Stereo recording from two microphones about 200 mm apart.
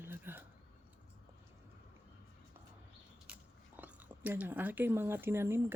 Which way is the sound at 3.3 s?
5° right (ahead or behind).